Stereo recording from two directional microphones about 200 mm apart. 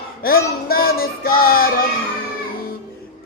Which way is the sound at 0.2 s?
50° left (ahead or behind).